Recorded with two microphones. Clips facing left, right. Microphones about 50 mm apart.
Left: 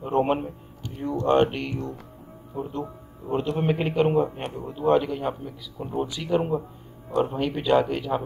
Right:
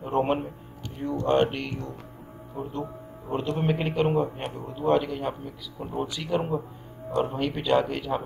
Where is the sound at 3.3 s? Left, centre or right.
Centre.